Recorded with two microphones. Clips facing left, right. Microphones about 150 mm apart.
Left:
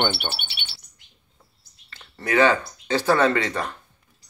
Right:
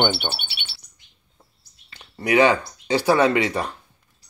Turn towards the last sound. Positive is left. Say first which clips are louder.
# right 2 dB
turn(degrees=-10)  # may be behind; listen again after turning